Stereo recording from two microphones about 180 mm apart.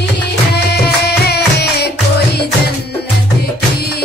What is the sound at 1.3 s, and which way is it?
Music, 65° left (ahead or behind).